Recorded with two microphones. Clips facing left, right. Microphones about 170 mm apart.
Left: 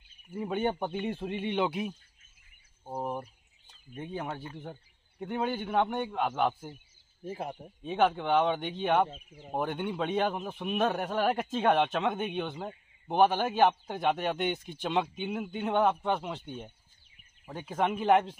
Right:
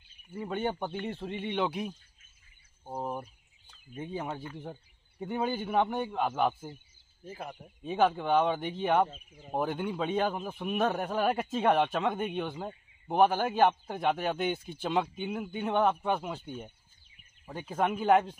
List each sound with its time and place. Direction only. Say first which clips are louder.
0.5 s speech: left 2 dB; 10° left (ahead or behind)
2.8 s a sound: left 1 dB; 5° left (ahead or behind)
3.9 s a man's voice: even; 5° right (ahead or behind)
7.2 s speech: left 5 dB; 25° left (ahead or behind)
7.8 s a man's voice: even; centre (ahead or behind)